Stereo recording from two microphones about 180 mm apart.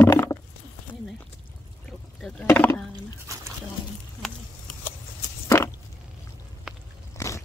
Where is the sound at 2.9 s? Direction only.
15° right (ahead or behind).